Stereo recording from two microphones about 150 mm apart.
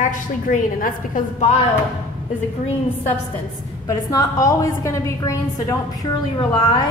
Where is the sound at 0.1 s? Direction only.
60° left (ahead or behind).